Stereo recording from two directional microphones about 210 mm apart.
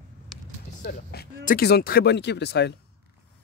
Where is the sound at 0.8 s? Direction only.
45° left (ahead or behind).